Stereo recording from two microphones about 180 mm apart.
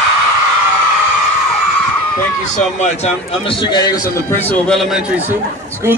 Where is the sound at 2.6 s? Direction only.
40° left (ahead or behind).